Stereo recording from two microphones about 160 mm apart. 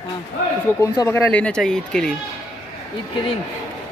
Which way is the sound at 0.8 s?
20° left (ahead or behind).